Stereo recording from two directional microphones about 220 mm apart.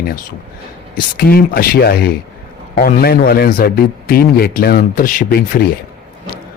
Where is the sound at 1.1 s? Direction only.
45° left (ahead or behind).